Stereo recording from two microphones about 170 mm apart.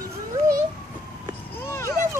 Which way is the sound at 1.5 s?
15° left (ahead or behind).